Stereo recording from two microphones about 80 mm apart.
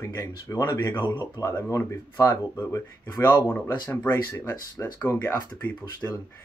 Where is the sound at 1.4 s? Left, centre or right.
Left.